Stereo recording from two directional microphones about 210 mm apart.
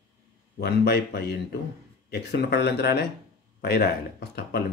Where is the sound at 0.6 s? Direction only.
50° left (ahead or behind).